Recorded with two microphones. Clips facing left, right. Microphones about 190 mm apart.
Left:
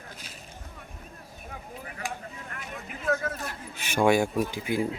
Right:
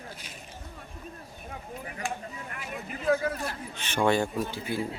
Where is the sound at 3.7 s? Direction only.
10° left (ahead or behind).